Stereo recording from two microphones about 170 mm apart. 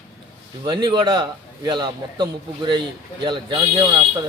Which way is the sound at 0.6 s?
25° right (ahead or behind).